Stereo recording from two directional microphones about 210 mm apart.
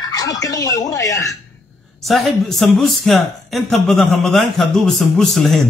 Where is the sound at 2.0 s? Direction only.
Centre (ahead or behind).